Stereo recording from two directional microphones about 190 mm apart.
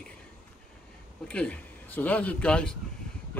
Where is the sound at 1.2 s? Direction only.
5° left (ahead or behind).